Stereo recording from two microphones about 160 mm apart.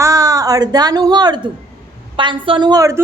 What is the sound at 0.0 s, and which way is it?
A woman's voice, 20° right (ahead or behind).